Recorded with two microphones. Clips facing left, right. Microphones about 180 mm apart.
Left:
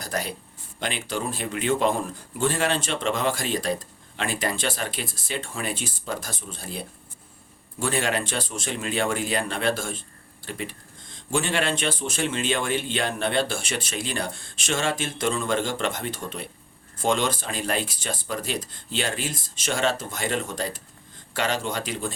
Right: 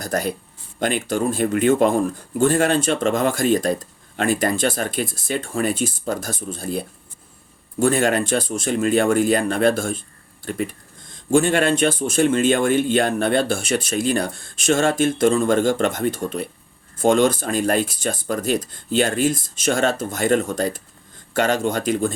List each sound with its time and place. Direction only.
0.0 s speech: 45° right (ahead or behind)